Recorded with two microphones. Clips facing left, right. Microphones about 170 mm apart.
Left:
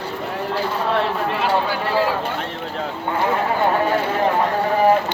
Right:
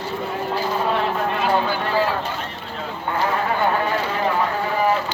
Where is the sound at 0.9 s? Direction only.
5° left (ahead or behind).